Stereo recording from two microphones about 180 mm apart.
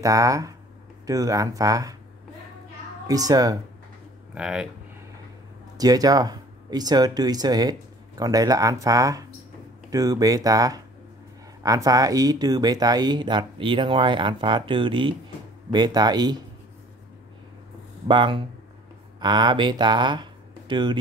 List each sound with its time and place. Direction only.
0.0 s speech: 20° right (ahead or behind)
3.1 s speech: 20° right (ahead or behind)
4.3 s speech: 5° right (ahead or behind)
5.8 s speech: 20° right (ahead or behind)
18.0 s speech: 25° right (ahead or behind)